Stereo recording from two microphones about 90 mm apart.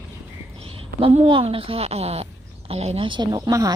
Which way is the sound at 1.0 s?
85° right.